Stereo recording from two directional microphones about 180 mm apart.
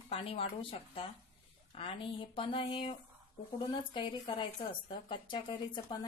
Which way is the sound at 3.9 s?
25° left (ahead or behind).